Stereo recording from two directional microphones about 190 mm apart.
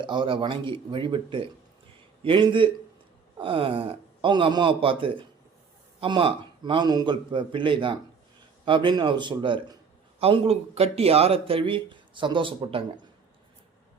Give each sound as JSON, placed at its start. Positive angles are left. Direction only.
{"t": 0.0, "sound": "speech", "side_deg": -25}